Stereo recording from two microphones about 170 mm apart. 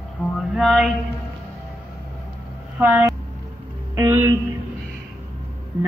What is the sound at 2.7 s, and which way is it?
Speech, 10° right (ahead or behind).